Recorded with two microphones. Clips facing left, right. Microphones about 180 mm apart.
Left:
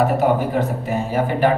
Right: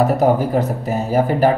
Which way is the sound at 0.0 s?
40° right (ahead or behind).